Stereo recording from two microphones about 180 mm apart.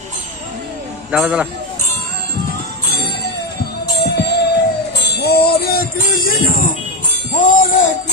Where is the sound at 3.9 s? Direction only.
65° left (ahead or behind); by 6.7 s 50° left (ahead or behind).